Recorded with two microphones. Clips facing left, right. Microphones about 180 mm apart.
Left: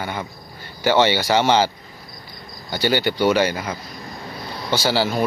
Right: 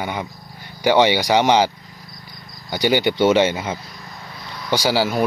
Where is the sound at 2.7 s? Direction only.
15° right (ahead or behind).